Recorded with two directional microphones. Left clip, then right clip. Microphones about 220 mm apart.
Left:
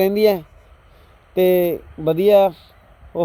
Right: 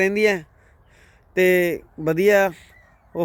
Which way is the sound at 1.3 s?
Centre (ahead or behind).